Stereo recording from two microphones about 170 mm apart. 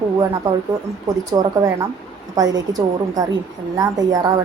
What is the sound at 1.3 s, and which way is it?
A woman's voice, 20° right (ahead or behind).